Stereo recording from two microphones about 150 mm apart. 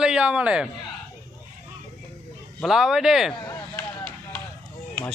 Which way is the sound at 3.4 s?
15° left (ahead or behind).